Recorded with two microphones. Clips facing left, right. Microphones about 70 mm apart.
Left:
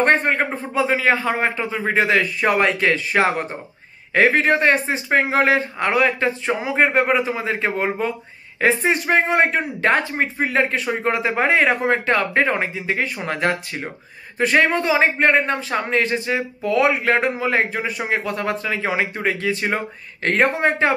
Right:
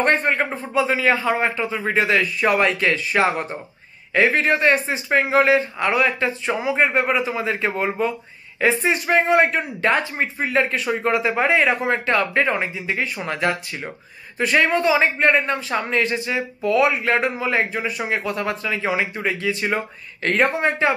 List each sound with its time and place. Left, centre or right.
0.0 s speech: left